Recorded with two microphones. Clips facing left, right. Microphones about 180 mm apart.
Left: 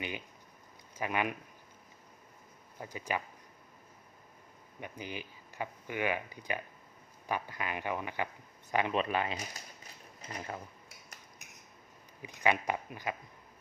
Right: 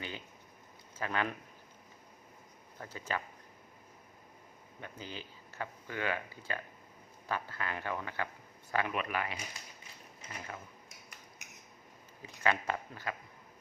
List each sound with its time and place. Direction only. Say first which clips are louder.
0.9 s speech: left 2 dB; 15° left (ahead or behind)
2.7 s speech: left 2 dB; 15° left (ahead or behind)
4.8 s speech: left 3 dB; 15° left (ahead or behind)
10.2 s drawer open or close: left 4 dB; 35° left (ahead or behind)
12.2 s speech: left 2 dB; 15° left (ahead or behind)